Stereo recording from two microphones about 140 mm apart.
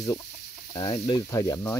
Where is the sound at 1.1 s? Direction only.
25° left (ahead or behind).